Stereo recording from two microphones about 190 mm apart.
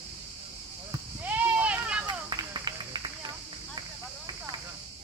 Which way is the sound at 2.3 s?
20° right (ahead or behind).